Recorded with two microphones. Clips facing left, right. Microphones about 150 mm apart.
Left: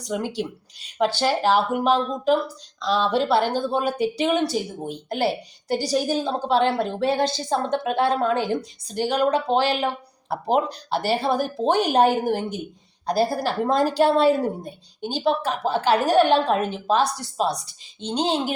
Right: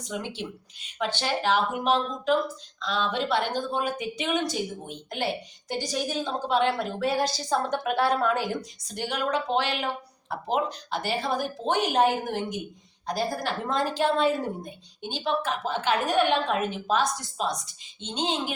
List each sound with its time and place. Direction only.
0.0 s speech: 40° left (ahead or behind)